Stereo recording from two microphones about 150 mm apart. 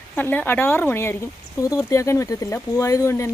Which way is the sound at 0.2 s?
15° left (ahead or behind).